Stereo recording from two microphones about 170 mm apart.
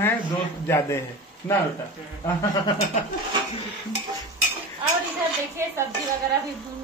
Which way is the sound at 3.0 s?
45° left (ahead or behind).